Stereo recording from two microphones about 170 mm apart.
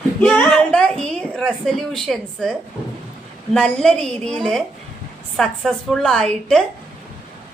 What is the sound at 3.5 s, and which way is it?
A woman's voice, 5° left (ahead or behind).